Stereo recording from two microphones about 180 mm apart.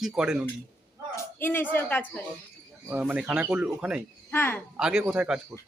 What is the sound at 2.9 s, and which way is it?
Speech, 10° right (ahead or behind).